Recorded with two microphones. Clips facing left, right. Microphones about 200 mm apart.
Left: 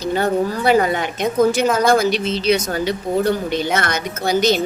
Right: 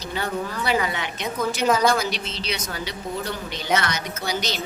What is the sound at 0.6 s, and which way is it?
A woman's voice, 50° left (ahead or behind).